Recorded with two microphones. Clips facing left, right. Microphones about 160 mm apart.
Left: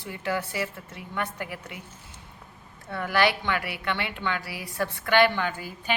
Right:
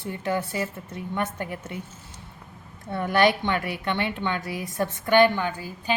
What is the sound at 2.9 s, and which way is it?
A woman's voice, 25° right (ahead or behind).